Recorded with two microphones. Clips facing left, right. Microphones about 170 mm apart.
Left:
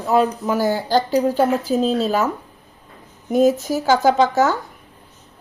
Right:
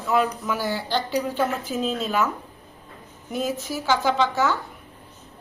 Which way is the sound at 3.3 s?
45° left (ahead or behind).